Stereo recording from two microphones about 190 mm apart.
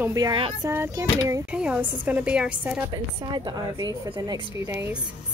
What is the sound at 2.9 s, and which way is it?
A woman's voice, 20° right (ahead or behind).